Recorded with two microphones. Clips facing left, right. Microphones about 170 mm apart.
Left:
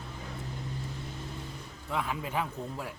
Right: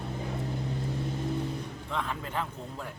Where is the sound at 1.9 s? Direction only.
10° left (ahead or behind).